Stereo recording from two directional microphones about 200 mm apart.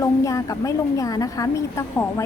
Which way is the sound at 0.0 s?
15° left (ahead or behind).